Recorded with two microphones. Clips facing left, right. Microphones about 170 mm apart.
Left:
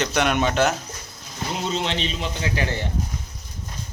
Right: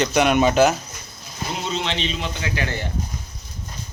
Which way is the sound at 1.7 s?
40° left (ahead or behind).